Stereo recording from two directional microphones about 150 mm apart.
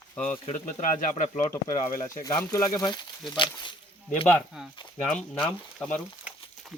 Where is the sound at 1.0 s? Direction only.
60° left (ahead or behind).